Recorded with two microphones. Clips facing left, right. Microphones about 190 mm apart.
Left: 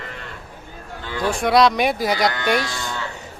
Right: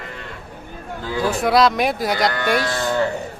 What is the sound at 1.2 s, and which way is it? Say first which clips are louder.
Speech: even; 5° right (ahead or behind).